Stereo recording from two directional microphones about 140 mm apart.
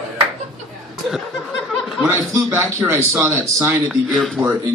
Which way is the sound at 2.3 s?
20° right (ahead or behind).